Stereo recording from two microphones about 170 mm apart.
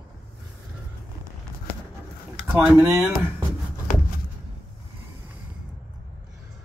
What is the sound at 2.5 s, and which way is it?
Speech, 10° right (ahead or behind).